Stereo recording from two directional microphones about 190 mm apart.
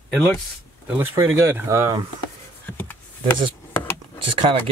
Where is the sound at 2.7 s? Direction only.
10° left (ahead or behind).